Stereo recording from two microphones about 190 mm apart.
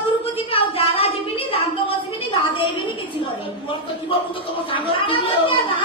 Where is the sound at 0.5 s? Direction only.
30° left (ahead or behind).